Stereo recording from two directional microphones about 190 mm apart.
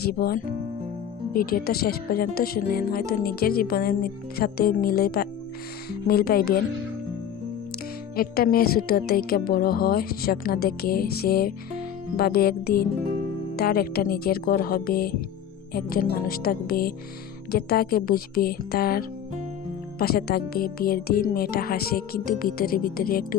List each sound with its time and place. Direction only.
0.0 s speech: 55° left (ahead or behind)
8.1 s speech: 50° left (ahead or behind)